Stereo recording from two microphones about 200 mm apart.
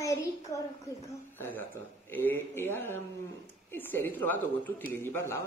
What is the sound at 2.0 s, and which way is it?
Speech, 10° left (ahead or behind).